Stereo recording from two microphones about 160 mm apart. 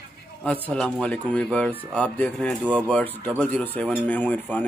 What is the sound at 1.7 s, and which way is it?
Speech, 10° right (ahead or behind).